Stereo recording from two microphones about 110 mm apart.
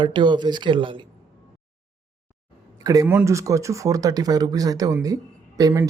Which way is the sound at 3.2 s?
30° right (ahead or behind).